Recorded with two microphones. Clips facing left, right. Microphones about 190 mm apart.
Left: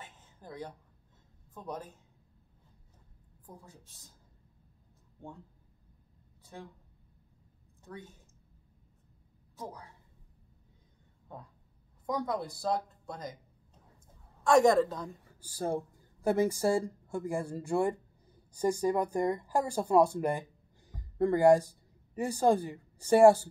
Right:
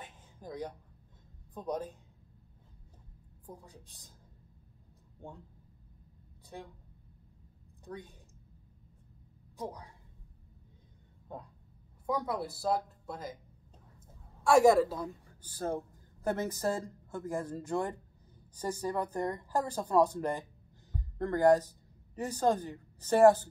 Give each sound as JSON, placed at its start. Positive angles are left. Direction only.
{"t": 0.0, "sound": "a sound", "side_deg": -15}
{"t": 1.5, "sound": "speech", "side_deg": -15}
{"t": 6.4, "sound": "speech", "side_deg": -15}
{"t": 7.8, "sound": "speech", "side_deg": -15}
{"t": 9.6, "sound": "a woman's voice", "side_deg": -15}
{"t": 12.1, "sound": "speech", "side_deg": -5}
{"t": 14.4, "sound": "a woman's voice", "side_deg": -5}
{"t": 15.4, "sound": "a woman's voice", "side_deg": 10}